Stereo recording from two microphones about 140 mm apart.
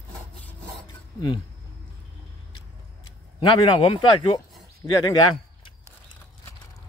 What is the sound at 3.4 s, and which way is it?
Speech, 35° left (ahead or behind).